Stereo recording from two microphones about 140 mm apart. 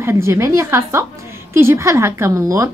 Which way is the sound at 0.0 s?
20° right (ahead or behind).